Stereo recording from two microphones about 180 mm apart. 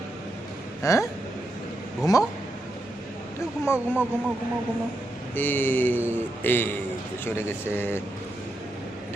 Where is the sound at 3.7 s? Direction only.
10° right (ahead or behind).